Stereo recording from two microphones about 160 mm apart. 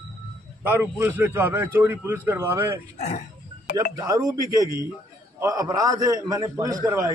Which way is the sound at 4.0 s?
20° right (ahead or behind).